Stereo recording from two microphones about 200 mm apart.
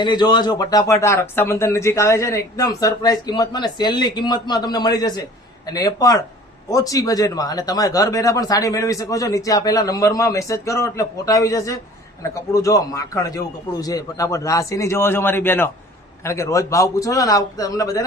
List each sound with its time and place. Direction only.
0.0 s a man's voice: 20° left (ahead or behind)